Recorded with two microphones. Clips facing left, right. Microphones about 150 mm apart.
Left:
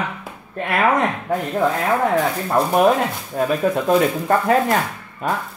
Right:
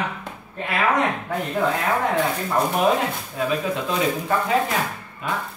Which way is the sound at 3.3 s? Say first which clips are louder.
Left 6 dB; 50° left (ahead or behind).